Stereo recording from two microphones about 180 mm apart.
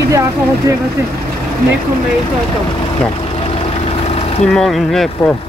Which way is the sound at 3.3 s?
35° left (ahead or behind).